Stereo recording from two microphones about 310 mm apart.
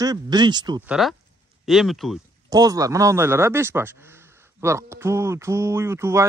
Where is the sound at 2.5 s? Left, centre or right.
Centre.